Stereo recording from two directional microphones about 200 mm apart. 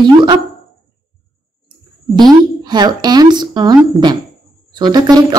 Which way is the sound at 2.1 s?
20° right (ahead or behind).